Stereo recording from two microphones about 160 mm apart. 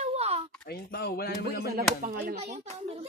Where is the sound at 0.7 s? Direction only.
75° left (ahead or behind).